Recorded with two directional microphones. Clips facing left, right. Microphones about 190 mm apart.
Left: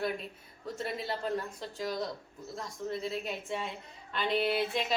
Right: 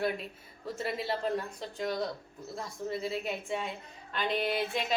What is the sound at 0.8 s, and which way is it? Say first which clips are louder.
A woman's voice: right 3 dB; 5° right (ahead or behind).